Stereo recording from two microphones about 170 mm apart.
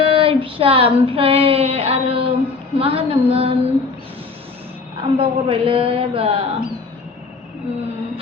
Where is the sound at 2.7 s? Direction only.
35° right (ahead or behind).